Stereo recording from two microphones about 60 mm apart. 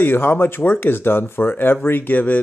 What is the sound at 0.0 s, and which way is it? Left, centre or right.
Speech, left.